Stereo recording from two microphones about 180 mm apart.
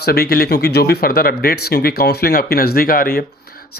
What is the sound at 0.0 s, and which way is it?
Speech, 60° left (ahead or behind).